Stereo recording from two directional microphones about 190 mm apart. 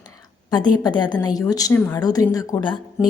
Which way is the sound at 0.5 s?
20° left (ahead or behind).